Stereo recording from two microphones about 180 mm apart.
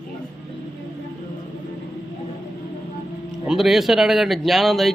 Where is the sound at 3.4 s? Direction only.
Centre (ahead or behind).